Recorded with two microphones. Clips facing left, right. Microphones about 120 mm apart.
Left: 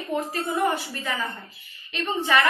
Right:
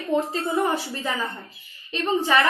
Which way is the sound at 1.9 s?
35° right (ahead or behind).